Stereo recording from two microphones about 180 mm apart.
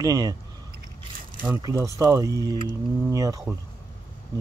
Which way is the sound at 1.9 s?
15° right (ahead or behind).